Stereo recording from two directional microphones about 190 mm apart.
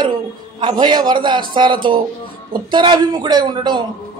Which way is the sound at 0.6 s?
25° right (ahead or behind).